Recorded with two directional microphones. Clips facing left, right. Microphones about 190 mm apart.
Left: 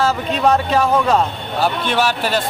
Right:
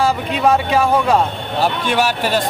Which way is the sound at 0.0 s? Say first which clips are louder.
Right 1 dB; 10° right (ahead or behind).